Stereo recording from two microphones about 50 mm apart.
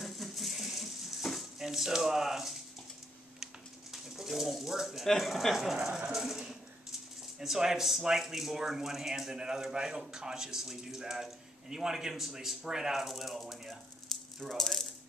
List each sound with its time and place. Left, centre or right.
0.0 s a sound: centre
3.9 s speech: centre
14.1 s rattle: centre
14.5 s speech: centre